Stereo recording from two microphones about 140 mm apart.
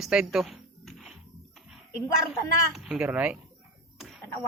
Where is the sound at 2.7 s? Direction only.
5° right (ahead or behind).